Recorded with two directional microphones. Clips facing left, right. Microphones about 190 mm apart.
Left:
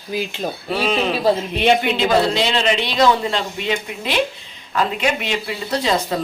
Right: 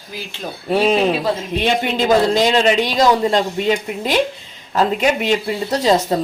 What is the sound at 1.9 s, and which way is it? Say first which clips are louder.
Speech: right 3 dB; 45° right (ahead or behind).